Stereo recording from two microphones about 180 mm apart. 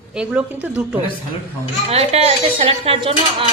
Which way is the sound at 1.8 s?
35° right (ahead or behind).